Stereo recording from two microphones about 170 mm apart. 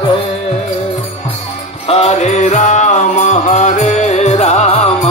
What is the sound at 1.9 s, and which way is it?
Music, 40° left (ahead or behind).